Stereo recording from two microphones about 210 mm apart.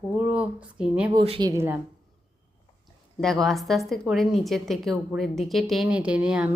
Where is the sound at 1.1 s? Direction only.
25° right (ahead or behind).